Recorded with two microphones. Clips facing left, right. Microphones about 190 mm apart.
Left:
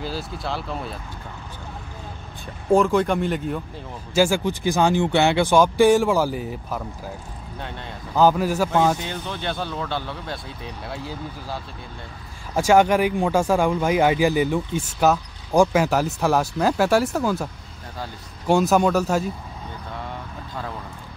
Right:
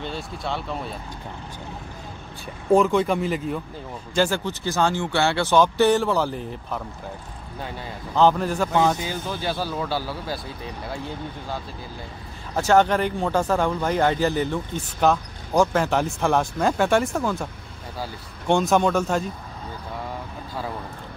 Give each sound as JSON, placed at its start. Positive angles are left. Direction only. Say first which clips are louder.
{"t": 0.0, "sound": "speech", "louder": "left 1 dB", "side_deg": 0}
{"t": 2.7, "sound": "speech", "louder": "even", "side_deg": 0}
{"t": 7.5, "sound": "speech", "louder": "right 1 dB", "side_deg": -5}
{"t": 18.5, "sound": "speech", "louder": "left 2 dB", "side_deg": 5}